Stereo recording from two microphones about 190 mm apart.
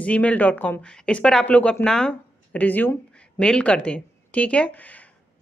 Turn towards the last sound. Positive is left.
turn(degrees=10)  # may be behind; listen again after turning